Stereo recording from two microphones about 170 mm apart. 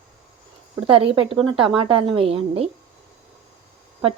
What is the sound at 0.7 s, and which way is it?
A woman's voice, 30° right (ahead or behind).